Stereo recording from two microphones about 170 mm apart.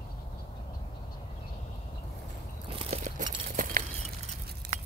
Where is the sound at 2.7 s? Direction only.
45° right (ahead or behind).